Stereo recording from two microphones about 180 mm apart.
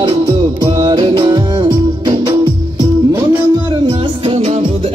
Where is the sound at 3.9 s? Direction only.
30° right (ahead or behind).